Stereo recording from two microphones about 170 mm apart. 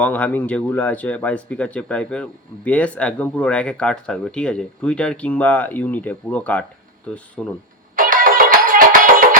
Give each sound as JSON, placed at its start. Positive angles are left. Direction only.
{"t": 0.0, "sound": "speech", "side_deg": 10}
{"t": 7.9, "sound": "music", "side_deg": -55}